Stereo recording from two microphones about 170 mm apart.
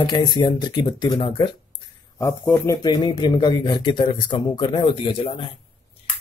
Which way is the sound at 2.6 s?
20° left (ahead or behind).